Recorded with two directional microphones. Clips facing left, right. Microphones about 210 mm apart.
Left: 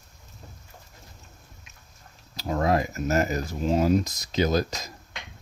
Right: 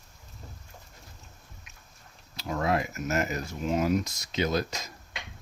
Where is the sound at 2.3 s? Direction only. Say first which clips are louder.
Left 4 dB; 35° left (ahead or behind).